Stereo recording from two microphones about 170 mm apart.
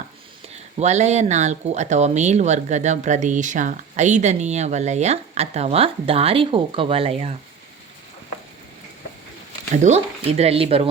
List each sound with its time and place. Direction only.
0.5 s speech: 40° right (ahead or behind)
9.8 s speech: 40° right (ahead or behind)